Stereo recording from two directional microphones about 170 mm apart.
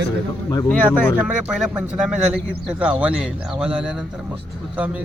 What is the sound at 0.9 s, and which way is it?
A man's voice, 5° right (ahead or behind).